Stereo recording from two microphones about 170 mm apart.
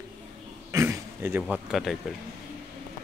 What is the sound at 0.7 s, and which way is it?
Speech, 15° right (ahead or behind).